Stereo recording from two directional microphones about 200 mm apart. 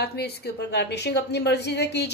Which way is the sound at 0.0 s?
55° left (ahead or behind).